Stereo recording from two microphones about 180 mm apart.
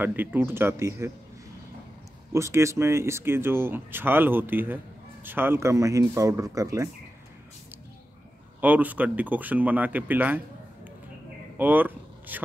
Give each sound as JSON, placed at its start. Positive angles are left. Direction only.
{"t": 0.0, "sound": "speech", "side_deg": -10}
{"t": 2.3, "sound": "speech", "side_deg": -15}
{"t": 8.5, "sound": "speech", "side_deg": -10}
{"t": 11.5, "sound": "vehicle", "side_deg": -10}